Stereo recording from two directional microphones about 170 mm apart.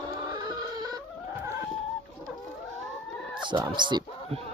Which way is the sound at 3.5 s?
25° right (ahead or behind).